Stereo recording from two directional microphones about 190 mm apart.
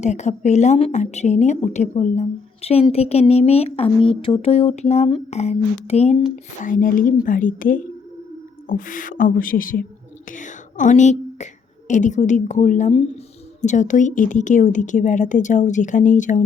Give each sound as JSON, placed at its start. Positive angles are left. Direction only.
{"t": 0.0, "sound": "a woman's voice", "side_deg": 40}
{"t": 6.6, "sound": "a woman's voice", "side_deg": 45}